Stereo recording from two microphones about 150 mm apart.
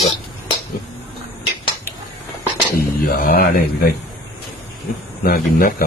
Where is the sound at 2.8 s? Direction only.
80° left.